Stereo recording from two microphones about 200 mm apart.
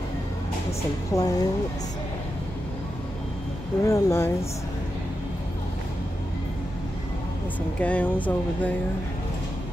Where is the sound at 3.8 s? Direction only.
15° left (ahead or behind).